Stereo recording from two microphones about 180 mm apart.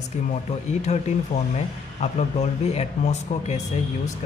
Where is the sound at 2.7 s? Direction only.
35° left (ahead or behind).